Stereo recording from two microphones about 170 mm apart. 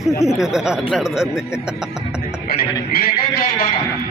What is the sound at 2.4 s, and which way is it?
Music, 60° left (ahead or behind).